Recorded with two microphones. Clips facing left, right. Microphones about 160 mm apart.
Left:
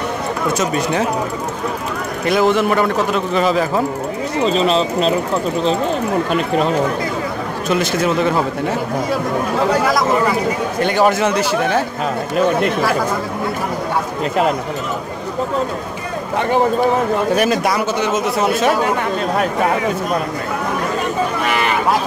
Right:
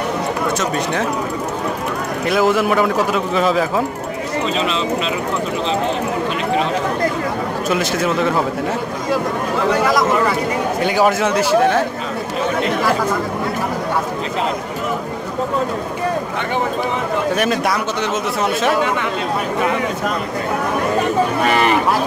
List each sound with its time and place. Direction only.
2.2 s a man's voice: 5° right (ahead or behind)
4.5 s speech: 35° left (ahead or behind)
7.7 s a man's voice: centre (ahead or behind)
10.8 s a man's voice: 5° right (ahead or behind)
18.1 s a man's voice: 5° left (ahead or behind)